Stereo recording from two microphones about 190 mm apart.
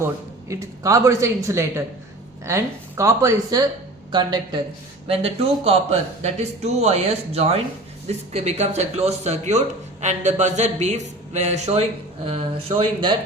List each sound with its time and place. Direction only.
0.0 s speech: 15° right (ahead or behind)